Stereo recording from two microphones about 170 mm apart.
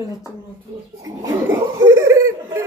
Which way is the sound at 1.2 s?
20° right (ahead or behind).